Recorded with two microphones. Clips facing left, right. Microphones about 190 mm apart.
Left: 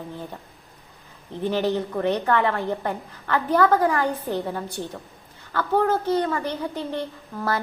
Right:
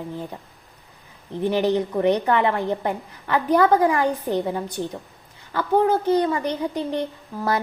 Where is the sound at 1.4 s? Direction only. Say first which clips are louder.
Right 3 dB; 15° right (ahead or behind).